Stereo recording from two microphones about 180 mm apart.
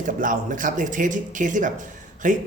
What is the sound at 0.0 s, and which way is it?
Speech, 45° right (ahead or behind).